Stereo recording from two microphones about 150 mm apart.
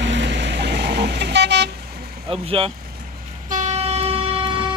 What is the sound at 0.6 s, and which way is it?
Vehicle, 90° right.